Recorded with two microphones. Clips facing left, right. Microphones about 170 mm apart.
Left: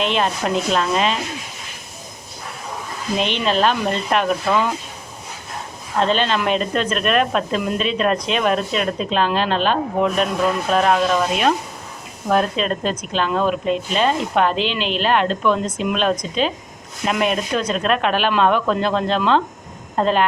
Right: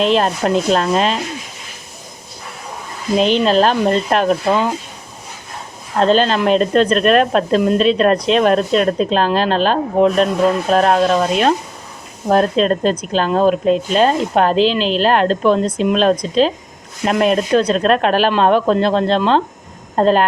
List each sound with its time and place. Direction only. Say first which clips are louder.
0.0 s speech: right 5 dB; 40° right (ahead or behind)
3.2 s speech: right 6 dB; 35° right (ahead or behind)
6.0 s speech: right 5 dB; 40° right (ahead or behind)